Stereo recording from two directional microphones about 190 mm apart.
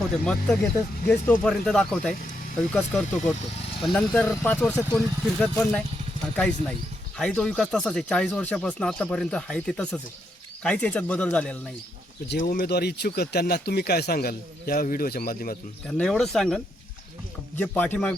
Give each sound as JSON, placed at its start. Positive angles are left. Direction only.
{"t": 0.1, "sound": "speech", "side_deg": 5}
{"t": 12.3, "sound": "speech", "side_deg": 50}
{"t": 15.9, "sound": "speech", "side_deg": 5}
{"t": 17.6, "sound": "speech", "side_deg": 10}